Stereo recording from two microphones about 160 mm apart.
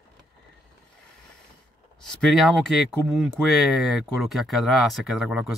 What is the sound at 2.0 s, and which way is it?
Speech, centre (ahead or behind).